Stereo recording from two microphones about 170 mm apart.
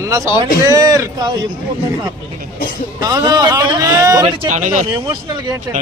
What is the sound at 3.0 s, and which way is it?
A man's voice, 25° right (ahead or behind).